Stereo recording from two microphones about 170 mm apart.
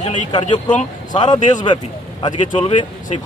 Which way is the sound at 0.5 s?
45° left (ahead or behind).